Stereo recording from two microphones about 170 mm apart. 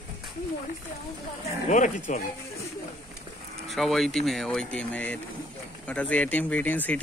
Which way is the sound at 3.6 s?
Centre (ahead or behind).